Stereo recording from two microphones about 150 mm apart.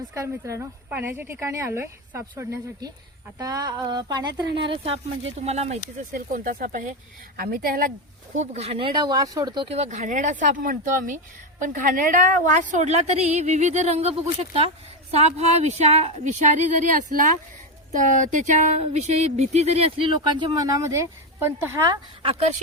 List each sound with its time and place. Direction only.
0.1 s a woman's voice: 20° right (ahead or behind); by 5.8 s 45° right (ahead or behind)
6.1 s speech: 70° right (ahead or behind)
8.4 s speech: 45° right (ahead or behind); by 9.6 s 25° right (ahead or behind)
9.6 s a woman's voice: 45° right (ahead or behind)
10.0 s a woman's voice: 60° right (ahead or behind)
15.1 s a woman's voice: 45° right (ahead or behind)
20.6 s a woman's voice: 20° right (ahead or behind)